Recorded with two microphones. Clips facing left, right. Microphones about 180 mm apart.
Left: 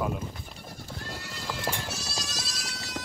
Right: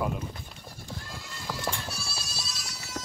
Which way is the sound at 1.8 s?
85° left.